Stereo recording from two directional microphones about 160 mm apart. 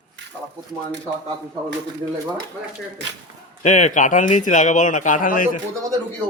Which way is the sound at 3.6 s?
45° left (ahead or behind).